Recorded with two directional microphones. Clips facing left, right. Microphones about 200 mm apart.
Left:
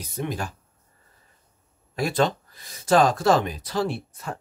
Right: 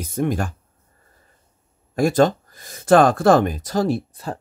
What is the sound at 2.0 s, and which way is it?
Speech, 45° right (ahead or behind).